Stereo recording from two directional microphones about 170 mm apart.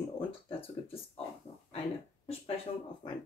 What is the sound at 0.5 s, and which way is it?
Speech, 35° left (ahead or behind).